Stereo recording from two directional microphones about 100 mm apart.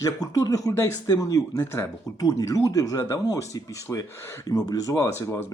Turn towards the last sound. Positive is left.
turn(degrees=30)  # may be behind; listen again after turning